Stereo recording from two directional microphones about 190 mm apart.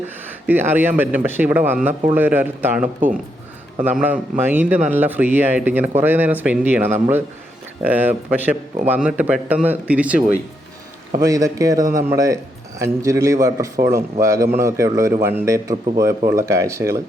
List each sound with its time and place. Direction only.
0.4 s a man's voice: 10° right (ahead or behind)
4.0 s a man's voice: 10° right (ahead or behind)
11.1 s a man's voice: 20° right (ahead or behind)